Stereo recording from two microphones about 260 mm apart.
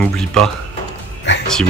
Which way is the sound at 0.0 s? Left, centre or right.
Centre.